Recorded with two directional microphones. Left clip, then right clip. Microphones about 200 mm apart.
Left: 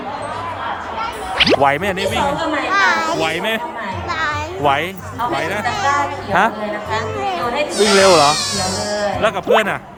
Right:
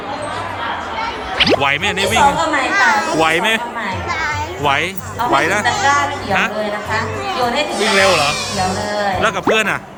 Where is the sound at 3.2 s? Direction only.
10° left (ahead or behind).